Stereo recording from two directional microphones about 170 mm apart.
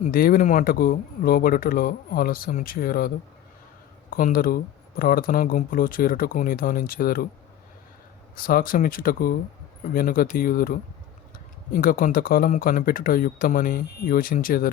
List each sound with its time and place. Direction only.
0.0 s speech: 60° left (ahead or behind)
4.1 s speech: 55° left (ahead or behind)
8.4 s speech: 55° left (ahead or behind)